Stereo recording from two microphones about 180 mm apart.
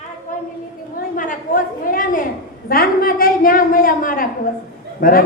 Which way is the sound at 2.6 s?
55° left (ahead or behind).